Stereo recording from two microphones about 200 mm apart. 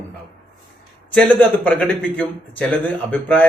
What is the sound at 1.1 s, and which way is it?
A man's voice, 5° left (ahead or behind).